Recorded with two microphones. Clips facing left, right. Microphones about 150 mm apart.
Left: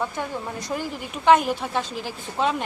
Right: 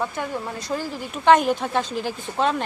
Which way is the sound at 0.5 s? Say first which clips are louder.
Right 1 dB; 20° left (ahead or behind).